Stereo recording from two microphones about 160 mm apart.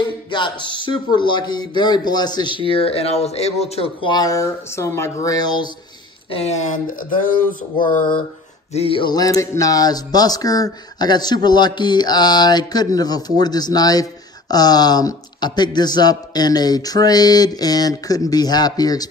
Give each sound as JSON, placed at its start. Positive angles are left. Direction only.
{"t": 0.3, "sound": "speech", "side_deg": 30}
{"t": 6.3, "sound": "speech", "side_deg": 45}
{"t": 8.7, "sound": "speech", "side_deg": 35}